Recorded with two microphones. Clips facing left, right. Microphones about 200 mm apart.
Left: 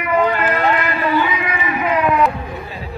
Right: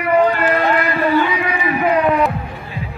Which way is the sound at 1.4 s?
30° right (ahead or behind).